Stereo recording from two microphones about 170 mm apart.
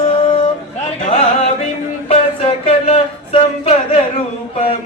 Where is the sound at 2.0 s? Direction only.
35° left (ahead or behind).